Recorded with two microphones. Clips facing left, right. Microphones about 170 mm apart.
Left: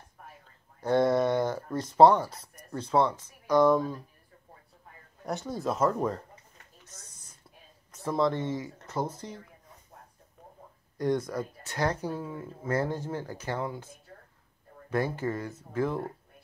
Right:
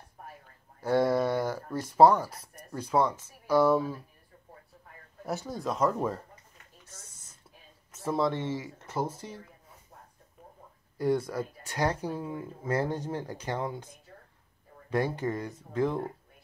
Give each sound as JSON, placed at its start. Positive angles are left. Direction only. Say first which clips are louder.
{"t": 0.7, "sound": "a sound", "louder": "left 1 dB", "side_deg": -10}
{"t": 1.8, "sound": "speech", "louder": "left 1 dB", "side_deg": -10}
{"t": 5.2, "sound": "speech", "louder": "left 1 dB", "side_deg": 0}
{"t": 8.0, "sound": "speech", "louder": "left 1 dB", "side_deg": -10}
{"t": 11.2, "sound": "speech", "louder": "even", "side_deg": -10}
{"t": 14.9, "sound": "speech", "louder": "even", "side_deg": -15}